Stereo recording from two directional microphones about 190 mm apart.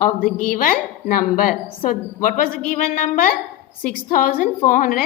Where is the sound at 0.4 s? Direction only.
45° left (ahead or behind).